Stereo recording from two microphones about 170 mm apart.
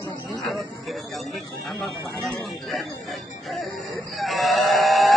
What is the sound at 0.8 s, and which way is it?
Speech, centre (ahead or behind).